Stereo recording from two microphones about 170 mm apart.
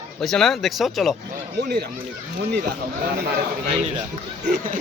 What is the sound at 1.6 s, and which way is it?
Speech, 70° right (ahead or behind).